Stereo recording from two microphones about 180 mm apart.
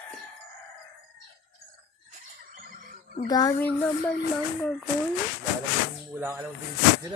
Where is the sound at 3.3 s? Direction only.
20° left (ahead or behind).